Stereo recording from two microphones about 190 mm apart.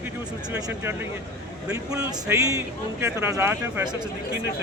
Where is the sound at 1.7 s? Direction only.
20° right (ahead or behind).